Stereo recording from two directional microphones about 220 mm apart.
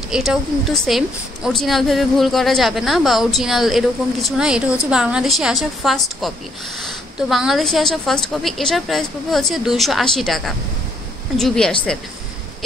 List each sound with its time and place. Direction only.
0.1 s a woman's voice: centre (ahead or behind)